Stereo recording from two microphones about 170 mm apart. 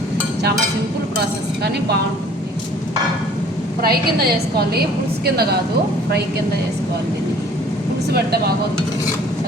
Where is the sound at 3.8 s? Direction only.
65° right (ahead or behind).